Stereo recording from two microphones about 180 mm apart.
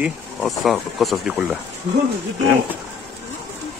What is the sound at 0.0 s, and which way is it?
Speech, centre (ahead or behind).